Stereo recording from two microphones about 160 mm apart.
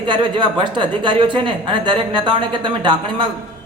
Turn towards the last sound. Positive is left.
turn(degrees=-30)  # may be behind; listen again after turning